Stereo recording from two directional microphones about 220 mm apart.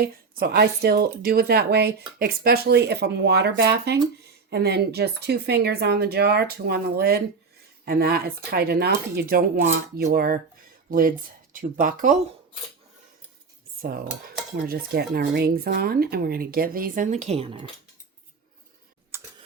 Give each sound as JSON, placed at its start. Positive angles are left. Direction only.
{"t": 0.0, "sound": "speech", "side_deg": -45}
{"t": 13.8, "sound": "speech", "side_deg": -45}
{"t": 19.1, "sound": "clicking", "side_deg": -10}